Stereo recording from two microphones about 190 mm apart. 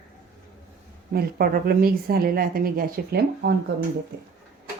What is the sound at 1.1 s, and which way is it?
Speech, 55° right (ahead or behind).